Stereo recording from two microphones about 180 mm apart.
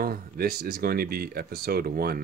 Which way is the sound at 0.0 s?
55° right (ahead or behind).